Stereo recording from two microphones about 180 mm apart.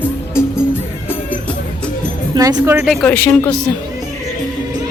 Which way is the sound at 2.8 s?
Centre (ahead or behind).